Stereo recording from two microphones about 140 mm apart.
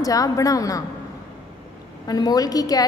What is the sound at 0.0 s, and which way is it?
Speech, 25° left (ahead or behind).